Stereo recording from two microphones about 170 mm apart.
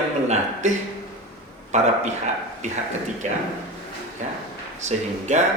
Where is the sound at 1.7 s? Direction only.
40° right (ahead or behind).